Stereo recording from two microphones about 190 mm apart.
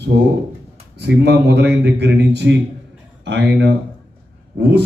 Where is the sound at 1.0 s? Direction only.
60° right (ahead or behind).